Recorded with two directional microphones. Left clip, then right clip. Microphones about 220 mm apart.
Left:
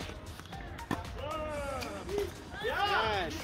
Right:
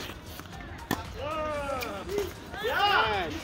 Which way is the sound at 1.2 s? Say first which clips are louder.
Right 5 dB; 25° right (ahead or behind).